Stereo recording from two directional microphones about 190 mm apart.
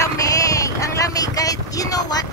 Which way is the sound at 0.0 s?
20° left (ahead or behind).